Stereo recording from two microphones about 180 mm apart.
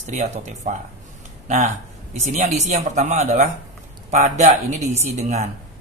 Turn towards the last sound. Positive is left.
turn(degrees=-40)  # may be behind; listen again after turning